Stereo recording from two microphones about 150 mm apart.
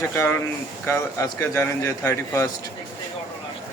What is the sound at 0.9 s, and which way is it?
Speech, 20° left (ahead or behind).